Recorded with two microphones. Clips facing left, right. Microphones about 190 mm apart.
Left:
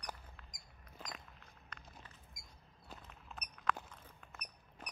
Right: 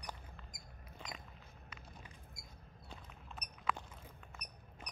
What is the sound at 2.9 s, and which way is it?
Walk, 5° left (ahead or behind).